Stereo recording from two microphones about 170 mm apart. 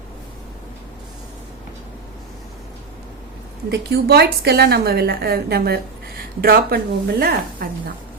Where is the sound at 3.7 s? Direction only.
70° right (ahead or behind).